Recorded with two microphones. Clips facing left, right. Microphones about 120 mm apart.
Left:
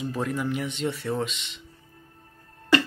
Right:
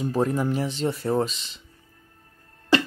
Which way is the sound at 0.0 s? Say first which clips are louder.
Right 5 dB; 35° right (ahead or behind).